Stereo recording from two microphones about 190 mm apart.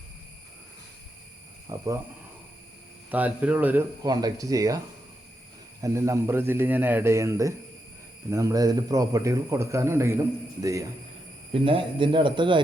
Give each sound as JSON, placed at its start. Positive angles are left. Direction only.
{"t": 1.7, "sound": "a man's voice", "side_deg": -15}
{"t": 3.1, "sound": "a man's voice", "side_deg": -10}
{"t": 4.0, "sound": "a man's voice", "side_deg": -20}
{"t": 5.8, "sound": "a man's voice", "side_deg": -15}
{"t": 11.5, "sound": "speech", "side_deg": -30}